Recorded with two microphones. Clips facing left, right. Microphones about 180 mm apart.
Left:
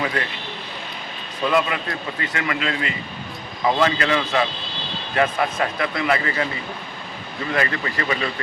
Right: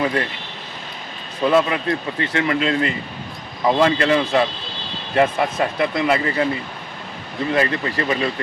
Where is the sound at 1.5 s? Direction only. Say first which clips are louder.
Right 4 dB; 30° right (ahead or behind).